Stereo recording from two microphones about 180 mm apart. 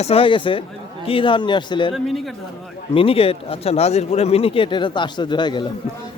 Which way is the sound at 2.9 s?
30° left (ahead or behind).